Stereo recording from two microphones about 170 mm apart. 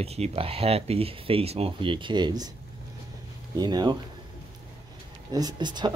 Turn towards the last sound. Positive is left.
turn(degrees=-25)  # may be behind; listen again after turning